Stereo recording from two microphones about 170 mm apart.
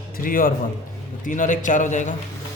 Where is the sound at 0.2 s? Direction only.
55° left (ahead or behind).